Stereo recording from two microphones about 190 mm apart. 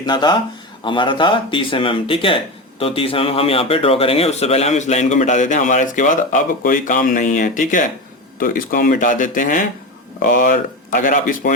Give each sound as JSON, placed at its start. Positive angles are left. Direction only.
{"t": 0.0, "sound": "a man's voice", "side_deg": 20}